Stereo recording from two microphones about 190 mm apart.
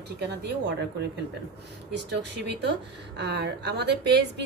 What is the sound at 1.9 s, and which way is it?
Speech, 65° right (ahead or behind).